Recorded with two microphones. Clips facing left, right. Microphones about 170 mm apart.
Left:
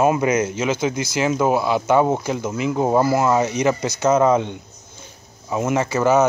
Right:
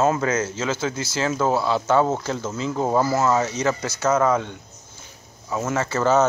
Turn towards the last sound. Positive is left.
turn(degrees=10)  # may be behind; listen again after turning